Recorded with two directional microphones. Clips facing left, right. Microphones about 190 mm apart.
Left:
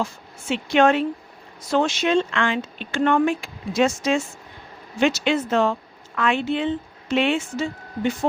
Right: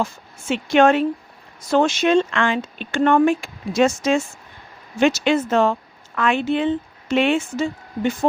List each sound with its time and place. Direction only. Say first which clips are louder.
0.0 s speech: right 3 dB; 50° right (ahead or behind)